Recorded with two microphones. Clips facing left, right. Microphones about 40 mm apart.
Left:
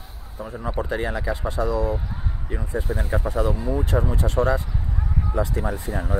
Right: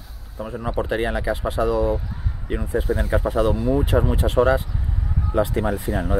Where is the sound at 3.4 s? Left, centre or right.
Right.